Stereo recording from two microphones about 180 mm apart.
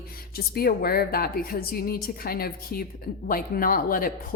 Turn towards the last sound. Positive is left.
turn(degrees=50)  # may be behind; listen again after turning